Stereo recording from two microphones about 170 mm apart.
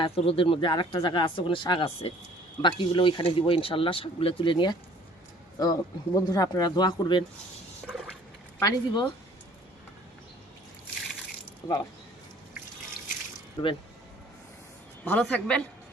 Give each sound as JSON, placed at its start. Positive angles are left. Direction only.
{"t": 0.0, "sound": "speech", "side_deg": 35}
{"t": 7.9, "sound": "a sound", "side_deg": -5}
{"t": 8.5, "sound": "speech", "side_deg": 20}
{"t": 11.6, "sound": "speech", "side_deg": 25}
{"t": 13.6, "sound": "speech", "side_deg": 25}
{"t": 15.0, "sound": "speech", "side_deg": 10}